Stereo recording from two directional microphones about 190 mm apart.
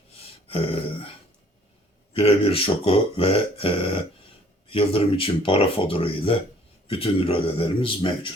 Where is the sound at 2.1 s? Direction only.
30° left (ahead or behind).